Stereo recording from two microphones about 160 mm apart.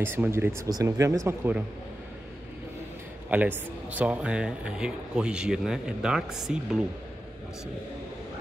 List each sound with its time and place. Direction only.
0.0 s speech: 15° right (ahead or behind)
3.3 s speech: 10° right (ahead or behind)